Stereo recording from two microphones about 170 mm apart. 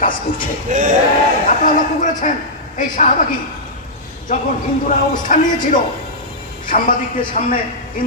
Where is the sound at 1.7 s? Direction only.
50° left (ahead or behind).